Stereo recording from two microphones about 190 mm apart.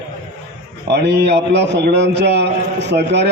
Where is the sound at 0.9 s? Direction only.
60° right (ahead or behind).